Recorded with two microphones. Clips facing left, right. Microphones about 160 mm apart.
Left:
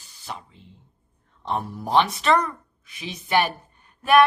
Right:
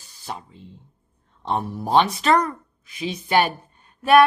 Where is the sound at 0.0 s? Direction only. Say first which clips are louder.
Right 3 dB; 40° right (ahead or behind).